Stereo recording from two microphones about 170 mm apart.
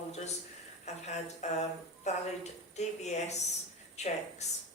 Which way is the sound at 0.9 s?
40° left (ahead or behind).